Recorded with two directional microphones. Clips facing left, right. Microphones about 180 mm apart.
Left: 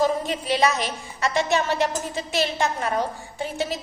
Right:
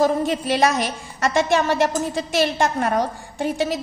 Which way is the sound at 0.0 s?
45° right (ahead or behind).